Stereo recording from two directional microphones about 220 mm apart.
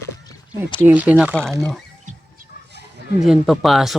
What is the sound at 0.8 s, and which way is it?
Speech, 10° right (ahead or behind).